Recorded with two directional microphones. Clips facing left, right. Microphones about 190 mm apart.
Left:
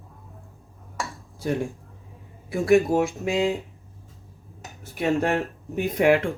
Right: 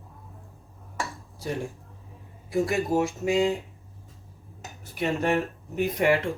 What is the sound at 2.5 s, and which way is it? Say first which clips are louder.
Speech: left 7 dB; 60° left (ahead or behind).